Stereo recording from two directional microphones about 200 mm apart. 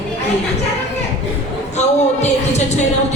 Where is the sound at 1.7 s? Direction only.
35° left (ahead or behind).